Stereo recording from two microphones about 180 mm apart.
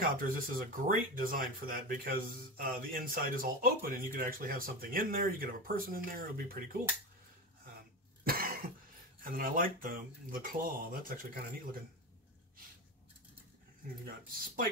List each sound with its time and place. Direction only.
0.0 s speech: 50° right (ahead or behind)
8.2 s cough: 55° right (ahead or behind)
9.2 s speech: 50° right (ahead or behind)
14.0 s speech: 50° right (ahead or behind)